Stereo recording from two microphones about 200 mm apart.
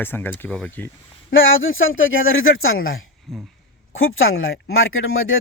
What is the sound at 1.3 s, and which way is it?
Speech, 75° left (ahead or behind).